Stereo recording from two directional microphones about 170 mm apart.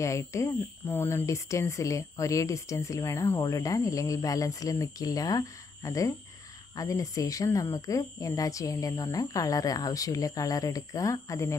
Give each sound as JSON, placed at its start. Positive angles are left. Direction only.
{"t": 0.0, "sound": "speech", "side_deg": 15}